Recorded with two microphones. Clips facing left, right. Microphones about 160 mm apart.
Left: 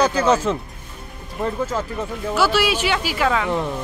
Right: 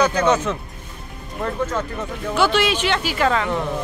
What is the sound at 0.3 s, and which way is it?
Speech, 30° left (ahead or behind).